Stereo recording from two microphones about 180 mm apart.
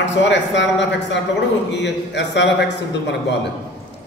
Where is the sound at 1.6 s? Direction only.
75° left (ahead or behind).